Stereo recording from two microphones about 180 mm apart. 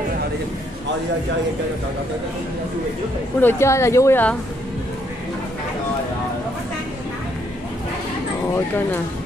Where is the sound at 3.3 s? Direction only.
15° left (ahead or behind).